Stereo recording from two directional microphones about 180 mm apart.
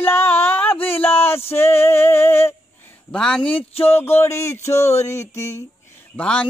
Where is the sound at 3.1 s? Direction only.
5° left (ahead or behind).